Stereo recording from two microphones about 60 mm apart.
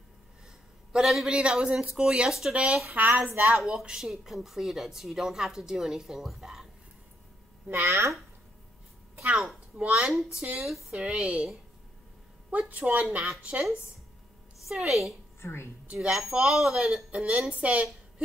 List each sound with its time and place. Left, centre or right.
0.9 s a woman's voice: centre
2.5 s speech: centre
3.4 s speech: centre
7.8 s speech: right
9.9 s a woman's voice: centre
10.9 s a woman's voice: centre
12.4 s speech: right
14.7 s speech: centre
15.4 s a woman's voice: left
16.0 s a woman's voice: centre
16.7 s a woman's voice: centre